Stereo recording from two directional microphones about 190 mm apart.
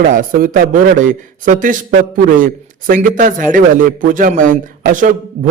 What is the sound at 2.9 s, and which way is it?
A man's voice, 45° right (ahead or behind).